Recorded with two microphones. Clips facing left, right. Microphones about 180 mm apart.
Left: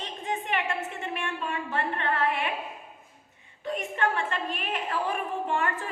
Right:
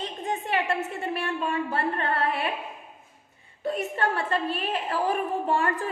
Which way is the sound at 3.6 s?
40° right (ahead or behind).